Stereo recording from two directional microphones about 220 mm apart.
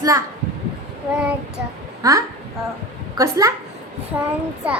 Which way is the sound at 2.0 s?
15° right (ahead or behind).